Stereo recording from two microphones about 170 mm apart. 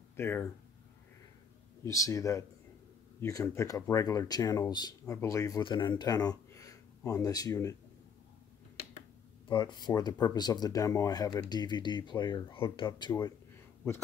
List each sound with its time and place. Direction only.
0.1 s speech: 15° left (ahead or behind)
1.9 s speech: 20° left (ahead or behind)
5.6 s speech: 30° left (ahead or behind)
9.5 s speech: 25° left (ahead or behind)